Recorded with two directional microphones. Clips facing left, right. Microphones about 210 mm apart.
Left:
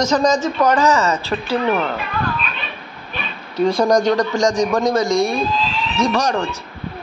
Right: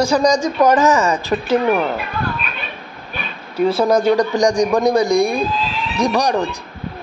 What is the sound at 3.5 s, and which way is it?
A man's voice, 5° right (ahead or behind).